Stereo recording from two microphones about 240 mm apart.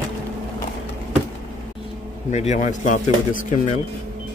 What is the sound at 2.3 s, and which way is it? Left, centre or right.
Speech, left.